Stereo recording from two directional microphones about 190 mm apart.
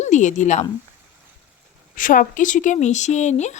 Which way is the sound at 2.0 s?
45° left (ahead or behind).